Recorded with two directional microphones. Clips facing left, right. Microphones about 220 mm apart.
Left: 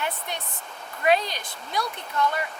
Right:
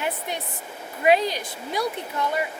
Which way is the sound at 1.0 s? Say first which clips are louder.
Right 3 dB; 5° right (ahead or behind).